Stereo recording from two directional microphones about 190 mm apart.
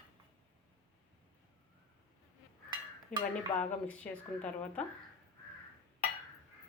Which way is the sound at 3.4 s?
5° left (ahead or behind).